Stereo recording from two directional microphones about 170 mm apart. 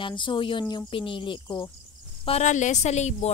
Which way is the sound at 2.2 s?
40° left (ahead or behind).